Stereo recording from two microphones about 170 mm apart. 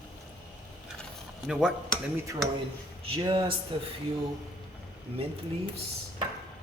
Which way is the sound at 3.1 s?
25° right (ahead or behind).